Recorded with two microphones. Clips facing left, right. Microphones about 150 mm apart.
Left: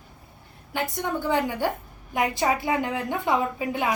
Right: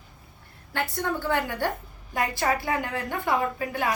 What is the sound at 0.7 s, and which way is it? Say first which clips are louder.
A woman's voice: left 1 dB; 15° left (ahead or behind).